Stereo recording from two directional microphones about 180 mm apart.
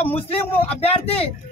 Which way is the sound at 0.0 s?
30° left (ahead or behind).